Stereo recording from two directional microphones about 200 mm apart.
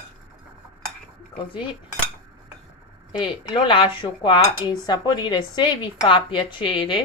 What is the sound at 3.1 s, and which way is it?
Speech, 25° left (ahead or behind).